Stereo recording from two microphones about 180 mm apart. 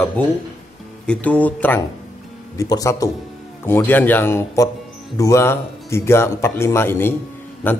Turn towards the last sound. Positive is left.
turn(degrees=10)  # may be behind; listen again after turning